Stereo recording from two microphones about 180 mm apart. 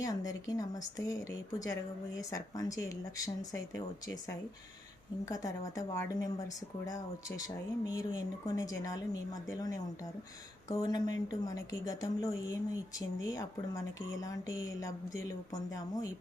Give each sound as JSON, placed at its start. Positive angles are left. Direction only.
{"t": 0.3, "sound": "speech", "side_deg": 20}